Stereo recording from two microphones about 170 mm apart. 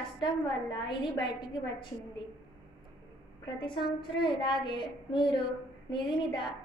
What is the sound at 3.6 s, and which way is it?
A woman's voice, 30° left (ahead or behind).